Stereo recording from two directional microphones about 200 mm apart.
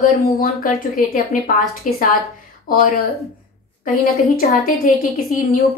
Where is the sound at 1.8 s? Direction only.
40° left (ahead or behind).